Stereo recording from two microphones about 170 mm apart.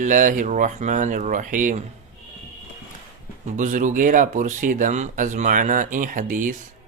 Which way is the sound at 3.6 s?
50° right (ahead or behind).